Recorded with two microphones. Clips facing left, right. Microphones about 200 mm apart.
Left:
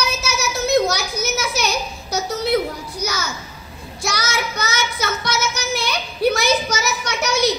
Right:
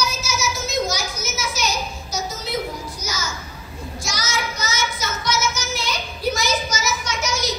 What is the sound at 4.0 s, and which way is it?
Child singing, 60° left (ahead or behind).